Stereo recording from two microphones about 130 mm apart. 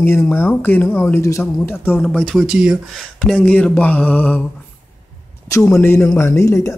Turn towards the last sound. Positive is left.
turn(degrees=20)  # may be behind; listen again after turning